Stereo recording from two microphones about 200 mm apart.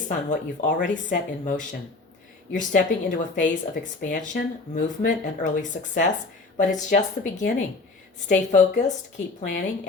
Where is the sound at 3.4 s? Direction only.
40° left (ahead or behind).